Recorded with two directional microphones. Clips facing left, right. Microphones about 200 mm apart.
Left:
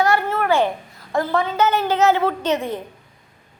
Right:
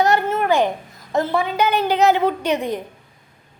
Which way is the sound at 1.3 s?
10° right (ahead or behind).